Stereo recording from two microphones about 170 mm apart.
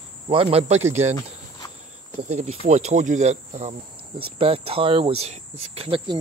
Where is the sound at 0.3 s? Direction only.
35° right (ahead or behind).